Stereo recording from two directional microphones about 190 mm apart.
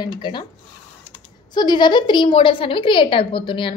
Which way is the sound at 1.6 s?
25° left (ahead or behind).